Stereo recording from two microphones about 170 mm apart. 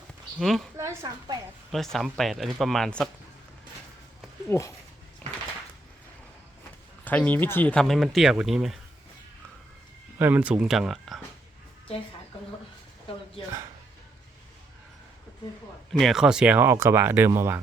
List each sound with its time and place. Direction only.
0.3 s speech: centre (ahead or behind)
0.8 s a woman's voice: 20° right (ahead or behind)
1.7 s speech: centre (ahead or behind)
4.4 s speech: 15° left (ahead or behind)
7.0 s speech: 10° left (ahead or behind)
10.2 s speech: 10° right (ahead or behind)
15.9 s speech: centre (ahead or behind)